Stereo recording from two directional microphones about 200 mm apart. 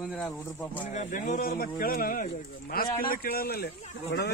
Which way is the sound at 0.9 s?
35° left (ahead or behind).